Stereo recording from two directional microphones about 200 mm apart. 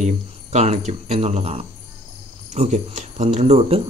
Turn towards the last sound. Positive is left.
turn(degrees=-30)  # may be behind; listen again after turning